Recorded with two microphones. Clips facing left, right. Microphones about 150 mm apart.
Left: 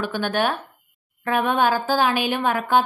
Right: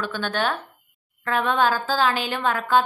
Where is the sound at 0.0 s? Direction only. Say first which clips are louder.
Left 3 dB; 15° left (ahead or behind).